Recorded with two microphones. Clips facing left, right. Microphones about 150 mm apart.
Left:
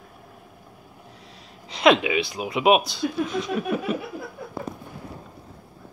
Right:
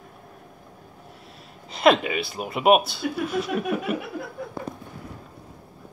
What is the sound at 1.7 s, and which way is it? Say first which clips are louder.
Speech: left 1 dB; 5° right (ahead or behind).